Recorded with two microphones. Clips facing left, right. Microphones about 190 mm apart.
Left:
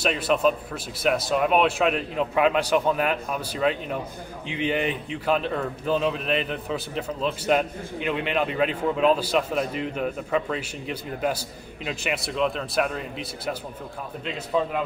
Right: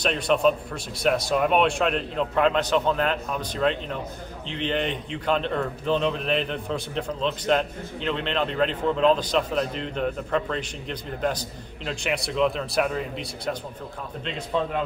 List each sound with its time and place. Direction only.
0.0 s a man's voice: 5° left (ahead or behind)